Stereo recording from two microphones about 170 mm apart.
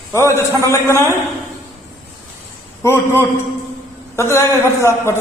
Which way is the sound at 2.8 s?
15° left (ahead or behind).